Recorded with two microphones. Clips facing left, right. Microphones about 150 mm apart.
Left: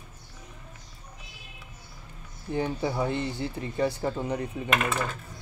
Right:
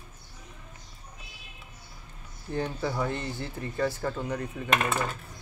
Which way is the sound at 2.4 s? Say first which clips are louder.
Left 2 dB; 15° left (ahead or behind).